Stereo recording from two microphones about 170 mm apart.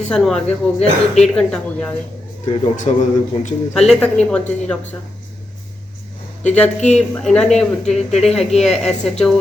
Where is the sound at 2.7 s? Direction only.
45° left (ahead or behind).